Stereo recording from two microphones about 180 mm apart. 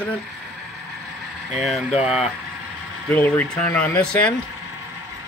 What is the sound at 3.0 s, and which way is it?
Speech, 10° left (ahead or behind).